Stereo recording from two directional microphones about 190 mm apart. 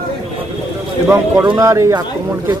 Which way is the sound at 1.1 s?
15° right (ahead or behind).